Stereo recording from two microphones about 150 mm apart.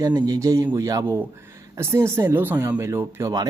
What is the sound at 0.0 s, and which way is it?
Speech, 25° right (ahead or behind).